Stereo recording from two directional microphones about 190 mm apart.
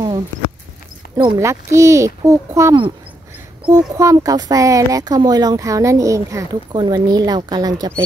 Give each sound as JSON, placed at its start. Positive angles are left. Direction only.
{"t": 1.1, "sound": "speech", "side_deg": -15}